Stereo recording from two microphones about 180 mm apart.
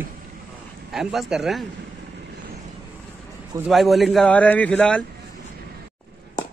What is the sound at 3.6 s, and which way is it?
A man's voice, centre (ahead or behind).